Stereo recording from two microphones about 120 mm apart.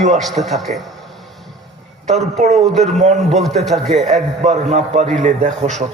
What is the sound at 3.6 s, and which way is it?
Speech, centre (ahead or behind).